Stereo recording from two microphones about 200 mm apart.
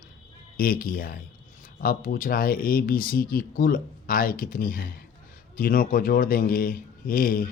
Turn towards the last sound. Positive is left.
turn(degrees=45)  # may be behind; listen again after turning